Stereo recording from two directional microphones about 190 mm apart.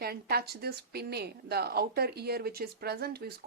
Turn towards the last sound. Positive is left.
turn(degrees=-55)  # may be behind; listen again after turning